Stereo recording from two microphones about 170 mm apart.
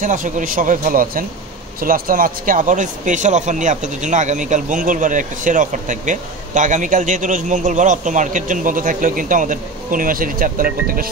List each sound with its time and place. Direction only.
0.0 s speech: 50° right (ahead or behind)